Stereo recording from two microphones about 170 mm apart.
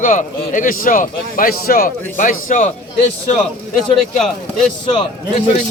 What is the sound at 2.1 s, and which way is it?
Speech, 50° left (ahead or behind).